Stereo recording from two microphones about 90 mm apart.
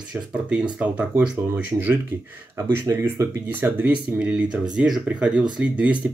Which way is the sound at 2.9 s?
30° right (ahead or behind).